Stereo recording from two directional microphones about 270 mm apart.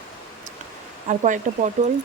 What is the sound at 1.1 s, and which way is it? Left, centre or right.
Speech, right.